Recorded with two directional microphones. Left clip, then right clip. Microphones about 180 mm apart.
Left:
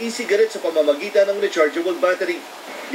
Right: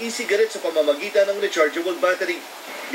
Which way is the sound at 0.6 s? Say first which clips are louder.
Left 2 dB; 40° left (ahead or behind).